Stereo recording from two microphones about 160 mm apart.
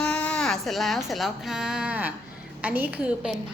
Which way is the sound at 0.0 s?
10° left (ahead or behind).